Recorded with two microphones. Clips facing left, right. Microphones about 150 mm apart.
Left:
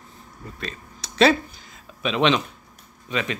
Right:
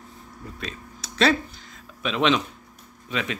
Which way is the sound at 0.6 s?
5° right (ahead or behind).